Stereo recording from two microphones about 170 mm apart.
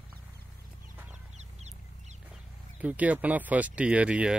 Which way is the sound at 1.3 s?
40° right (ahead or behind).